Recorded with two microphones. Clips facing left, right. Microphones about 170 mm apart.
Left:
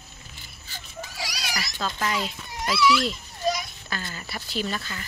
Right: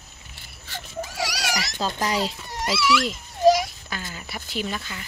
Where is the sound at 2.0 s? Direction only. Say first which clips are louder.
Right 3 dB; 35° right (ahead or behind).